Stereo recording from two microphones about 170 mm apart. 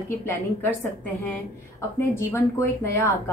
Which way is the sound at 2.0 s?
15° left (ahead or behind).